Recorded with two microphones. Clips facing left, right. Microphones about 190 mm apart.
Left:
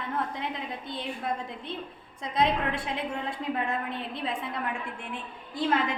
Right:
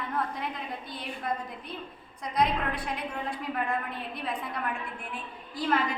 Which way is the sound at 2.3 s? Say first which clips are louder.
Left 1 dB; 25° left (ahead or behind).